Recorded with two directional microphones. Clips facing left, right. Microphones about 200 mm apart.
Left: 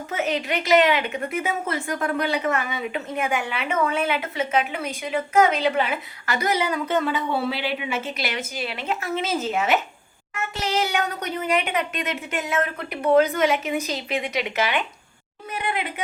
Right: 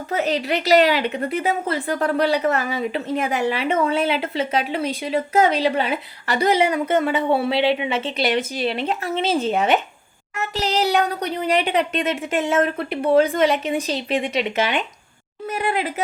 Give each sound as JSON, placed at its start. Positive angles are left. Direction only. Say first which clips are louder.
{"t": 0.1, "sound": "a woman's voice", "louder": "right 4 dB", "side_deg": -35}
{"t": 6.7, "sound": "speech", "louder": "right 4 dB", "side_deg": -55}
{"t": 7.5, "sound": "a woman's voice", "louder": "right 7 dB", "side_deg": -25}
{"t": 15.4, "sound": "a woman's voice", "louder": "right 5 dB", "side_deg": -40}